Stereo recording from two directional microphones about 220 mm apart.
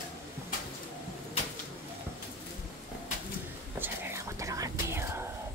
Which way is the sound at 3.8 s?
10° right (ahead or behind).